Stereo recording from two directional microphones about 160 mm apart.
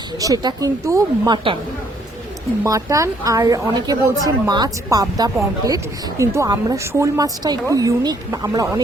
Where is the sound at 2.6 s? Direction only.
20° right (ahead or behind).